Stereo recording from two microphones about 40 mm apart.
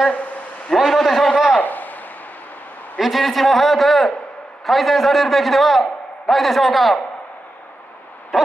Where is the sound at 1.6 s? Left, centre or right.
Left.